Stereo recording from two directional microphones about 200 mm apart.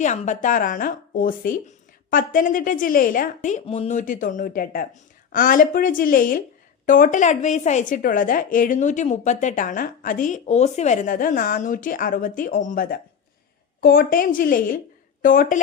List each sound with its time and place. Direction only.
0.0 s a woman's voice: 35° left (ahead or behind)